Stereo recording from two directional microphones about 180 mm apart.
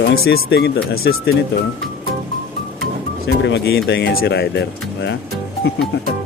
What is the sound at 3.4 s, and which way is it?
Speech, 70° left (ahead or behind).